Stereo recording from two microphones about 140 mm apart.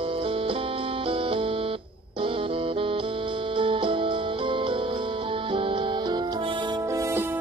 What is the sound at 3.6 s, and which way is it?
Music, 40° right (ahead or behind).